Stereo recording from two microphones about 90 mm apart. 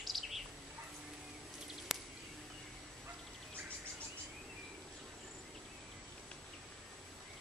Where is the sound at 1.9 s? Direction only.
5° right (ahead or behind).